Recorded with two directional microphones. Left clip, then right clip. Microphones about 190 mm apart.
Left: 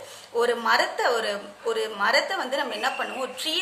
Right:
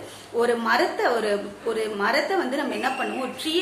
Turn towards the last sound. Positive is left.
turn(degrees=30)  # may be behind; listen again after turning